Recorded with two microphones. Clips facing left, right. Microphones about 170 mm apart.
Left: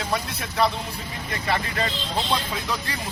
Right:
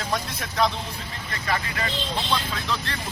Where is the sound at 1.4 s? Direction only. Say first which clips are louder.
Left 2 dB; 25° left (ahead or behind).